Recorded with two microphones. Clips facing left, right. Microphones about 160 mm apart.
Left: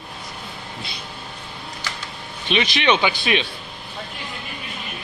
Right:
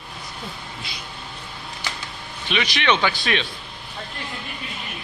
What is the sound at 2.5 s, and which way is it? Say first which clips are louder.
Speech: left 3 dB; 25° left (ahead or behind).